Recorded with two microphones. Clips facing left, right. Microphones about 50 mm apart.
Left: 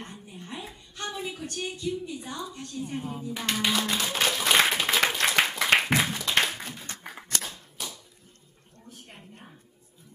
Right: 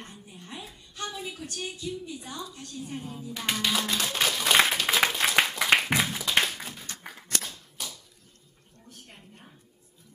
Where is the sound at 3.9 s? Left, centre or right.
Centre.